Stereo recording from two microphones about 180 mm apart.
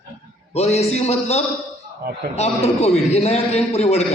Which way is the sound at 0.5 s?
35° left (ahead or behind).